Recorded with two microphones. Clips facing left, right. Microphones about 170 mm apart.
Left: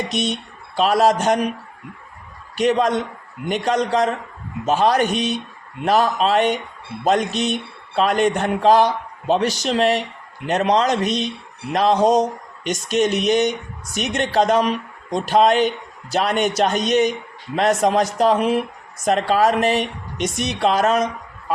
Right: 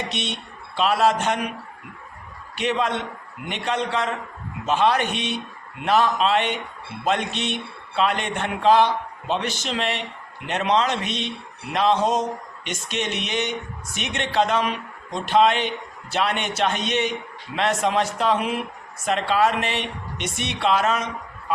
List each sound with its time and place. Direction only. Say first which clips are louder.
0.1 s a man's voice: left 7 dB; 40° left (ahead or behind)
2.6 s a man's voice: left 6 dB; 40° left (ahead or behind)